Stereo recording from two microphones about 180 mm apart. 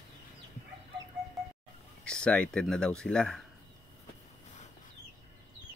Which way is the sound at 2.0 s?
5° left (ahead or behind).